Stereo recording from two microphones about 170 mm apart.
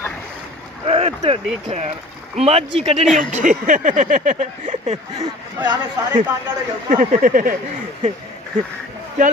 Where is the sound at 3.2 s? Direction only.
45° right (ahead or behind).